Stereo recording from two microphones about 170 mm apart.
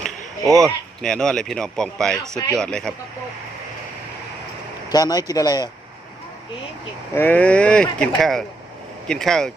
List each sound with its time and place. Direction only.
0.4 s speech: 20° right (ahead or behind)
1.0 s speech: 5° left (ahead or behind)
4.9 s speech: 20° left (ahead or behind)
7.1 s speech: 10° left (ahead or behind)